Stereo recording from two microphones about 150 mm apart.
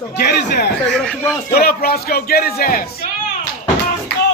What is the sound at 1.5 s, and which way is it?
Speech, 85° left.